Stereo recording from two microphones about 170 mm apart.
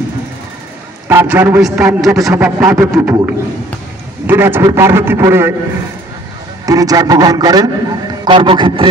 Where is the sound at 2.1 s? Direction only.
20° right (ahead or behind).